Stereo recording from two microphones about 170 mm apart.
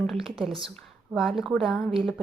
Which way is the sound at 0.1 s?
Centre (ahead or behind).